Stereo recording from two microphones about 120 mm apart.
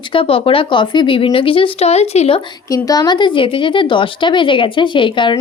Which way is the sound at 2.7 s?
30° left (ahead or behind).